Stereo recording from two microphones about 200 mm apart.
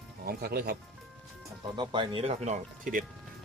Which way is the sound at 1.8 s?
25° right (ahead or behind).